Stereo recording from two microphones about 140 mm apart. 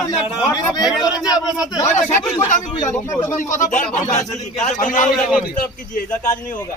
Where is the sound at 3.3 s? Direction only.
65° left (ahead or behind).